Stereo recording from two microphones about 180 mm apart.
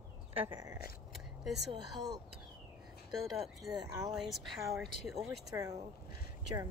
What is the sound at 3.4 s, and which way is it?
Speech, centre (ahead or behind).